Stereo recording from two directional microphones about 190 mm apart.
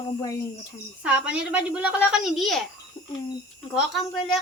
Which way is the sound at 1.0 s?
5° right (ahead or behind).